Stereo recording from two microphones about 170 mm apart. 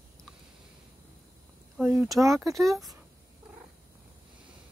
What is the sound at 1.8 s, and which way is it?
Speech, 10° right (ahead or behind).